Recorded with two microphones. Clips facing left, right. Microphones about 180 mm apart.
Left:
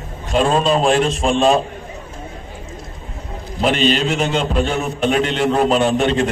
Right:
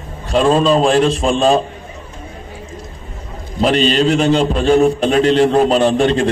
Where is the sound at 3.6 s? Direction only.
35° right (ahead or behind).